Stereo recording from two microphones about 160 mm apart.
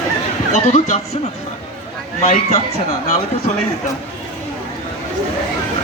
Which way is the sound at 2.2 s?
45° left (ahead or behind).